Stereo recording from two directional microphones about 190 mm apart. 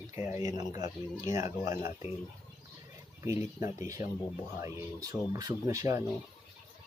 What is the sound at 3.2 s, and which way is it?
Speech, 15° right (ahead or behind).